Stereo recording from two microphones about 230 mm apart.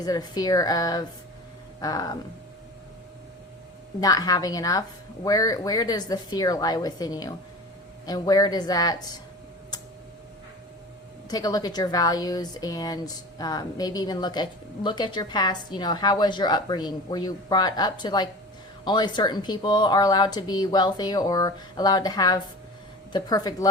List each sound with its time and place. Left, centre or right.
0.0 s speech: centre
4.0 s speech: centre
11.3 s a woman's voice: centre